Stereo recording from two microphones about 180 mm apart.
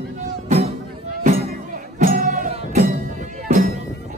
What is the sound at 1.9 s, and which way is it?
Music, 50° right (ahead or behind).